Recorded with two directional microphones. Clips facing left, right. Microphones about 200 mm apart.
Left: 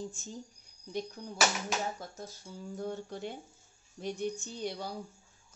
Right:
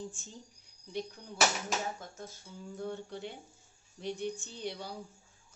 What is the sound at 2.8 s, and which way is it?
Speech, 45° left (ahead or behind).